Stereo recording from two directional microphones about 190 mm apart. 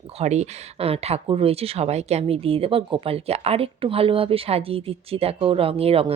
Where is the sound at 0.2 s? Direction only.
35° right (ahead or behind).